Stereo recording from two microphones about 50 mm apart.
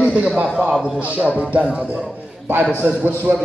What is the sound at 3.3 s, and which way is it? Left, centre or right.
Speech, right.